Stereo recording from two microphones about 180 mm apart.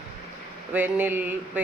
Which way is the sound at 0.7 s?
10° right (ahead or behind).